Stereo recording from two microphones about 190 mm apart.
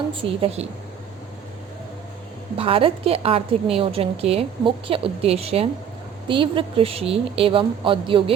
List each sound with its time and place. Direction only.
0.2 s a woman's voice: 30° right (ahead or behind)
2.6 s a woman's voice: 30° right (ahead or behind)